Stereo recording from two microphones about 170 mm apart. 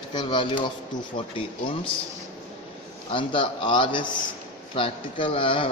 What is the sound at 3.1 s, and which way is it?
A man's voice, 30° left (ahead or behind).